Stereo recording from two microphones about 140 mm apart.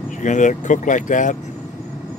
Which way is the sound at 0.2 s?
65° left (ahead or behind).